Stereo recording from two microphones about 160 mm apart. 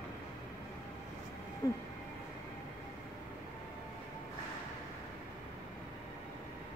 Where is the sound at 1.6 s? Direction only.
20° left (ahead or behind).